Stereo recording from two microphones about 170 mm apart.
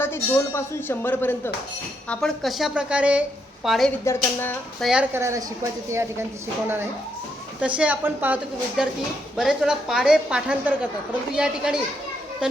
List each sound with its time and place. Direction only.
0.0 s speech: 15° left (ahead or behind)
2.0 s a woman's voice: centre (ahead or behind)
4.0 s speech: 15° left (ahead or behind)
4.8 s a woman's voice: 5° right (ahead or behind)
5.9 s a woman's voice: 15° right (ahead or behind)
7.8 s a woman's voice: 10° right (ahead or behind)